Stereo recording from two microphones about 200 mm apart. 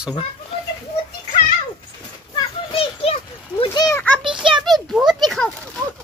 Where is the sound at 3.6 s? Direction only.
20° left (ahead or behind).